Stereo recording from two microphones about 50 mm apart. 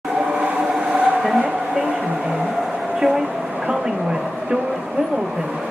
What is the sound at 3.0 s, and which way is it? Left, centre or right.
Vehicle, centre.